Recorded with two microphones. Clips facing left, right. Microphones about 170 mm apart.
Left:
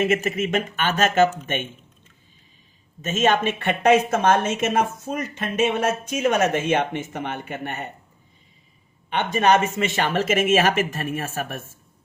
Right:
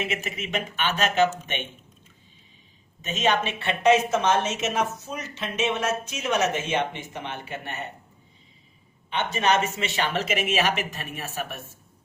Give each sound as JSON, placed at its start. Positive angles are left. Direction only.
{"t": 0.0, "sound": "speech", "side_deg": 50}
{"t": 3.0, "sound": "speech", "side_deg": 50}
{"t": 9.0, "sound": "speech", "side_deg": 50}